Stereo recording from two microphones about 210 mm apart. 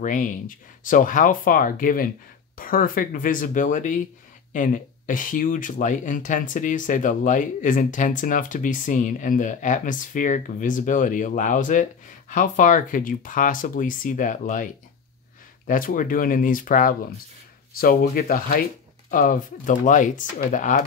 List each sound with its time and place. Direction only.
0.0 s speech: 40° left (ahead or behind)